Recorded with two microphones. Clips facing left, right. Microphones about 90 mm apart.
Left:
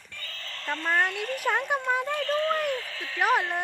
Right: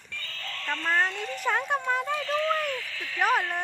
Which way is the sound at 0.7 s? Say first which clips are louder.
Even; 35° left (ahead or behind).